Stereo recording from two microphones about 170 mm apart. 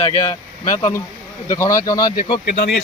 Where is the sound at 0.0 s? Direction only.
40° left (ahead or behind).